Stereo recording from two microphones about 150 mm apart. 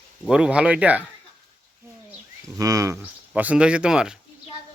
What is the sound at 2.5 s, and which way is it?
Speech, 20° right (ahead or behind).